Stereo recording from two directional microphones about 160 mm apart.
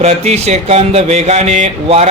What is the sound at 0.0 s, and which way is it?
Speech, 40° right (ahead or behind).